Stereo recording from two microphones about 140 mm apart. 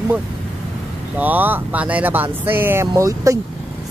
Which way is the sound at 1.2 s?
15° right (ahead or behind).